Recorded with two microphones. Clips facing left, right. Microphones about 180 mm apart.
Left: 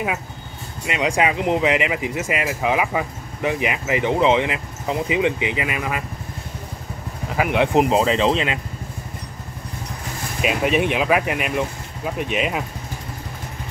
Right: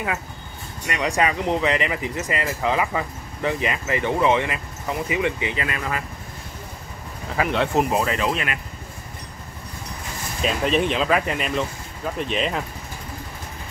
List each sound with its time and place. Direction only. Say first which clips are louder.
0.8 s speech: left 2 dB; 15° left (ahead or behind)
7.3 s speech: left 3 dB; 15° left (ahead or behind)
10.4 s speech: left 2 dB; 10° left (ahead or behind)